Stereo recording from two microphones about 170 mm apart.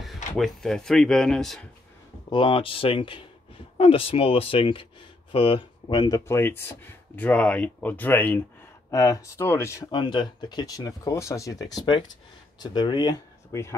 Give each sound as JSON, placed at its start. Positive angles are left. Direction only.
{"t": 0.0, "sound": "speech", "side_deg": 0}
{"t": 2.2, "sound": "speech", "side_deg": 30}
{"t": 9.8, "sound": "speech", "side_deg": 25}